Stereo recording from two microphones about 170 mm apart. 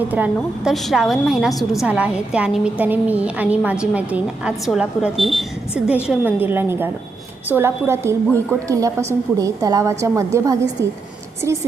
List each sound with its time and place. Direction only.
0.1 s a woman's voice: 5° right (ahead or behind)